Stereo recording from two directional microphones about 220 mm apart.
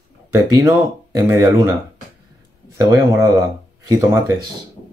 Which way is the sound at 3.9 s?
15° right (ahead or behind).